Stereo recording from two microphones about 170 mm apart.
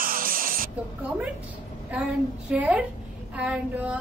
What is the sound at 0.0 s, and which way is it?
Music, 55° right (ahead or behind).